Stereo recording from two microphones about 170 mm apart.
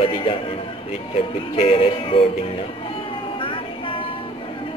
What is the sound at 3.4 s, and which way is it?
Music, 30° left (ahead or behind).